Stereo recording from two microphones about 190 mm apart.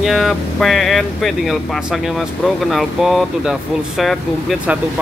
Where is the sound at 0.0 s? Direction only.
Centre (ahead or behind).